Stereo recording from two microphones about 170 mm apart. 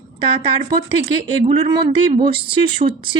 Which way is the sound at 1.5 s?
35° right (ahead or behind).